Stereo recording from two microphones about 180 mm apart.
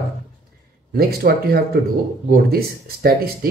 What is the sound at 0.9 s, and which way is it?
Speech, 55° right (ahead or behind).